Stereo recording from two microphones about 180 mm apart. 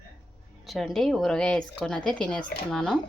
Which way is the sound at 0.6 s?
Centre (ahead or behind).